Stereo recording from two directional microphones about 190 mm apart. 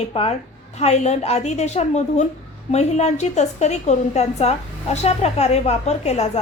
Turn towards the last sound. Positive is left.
turn(degrees=35)  # may be behind; listen again after turning